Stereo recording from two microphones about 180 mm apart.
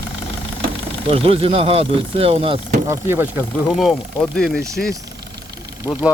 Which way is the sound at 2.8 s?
15° right (ahead or behind).